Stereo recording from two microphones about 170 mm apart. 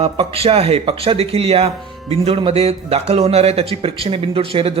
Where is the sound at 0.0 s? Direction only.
35° right (ahead or behind).